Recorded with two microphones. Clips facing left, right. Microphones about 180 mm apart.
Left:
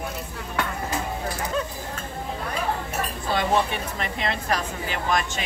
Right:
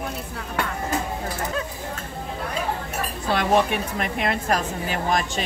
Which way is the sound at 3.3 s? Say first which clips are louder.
Right 3 dB; 65° right (ahead or behind).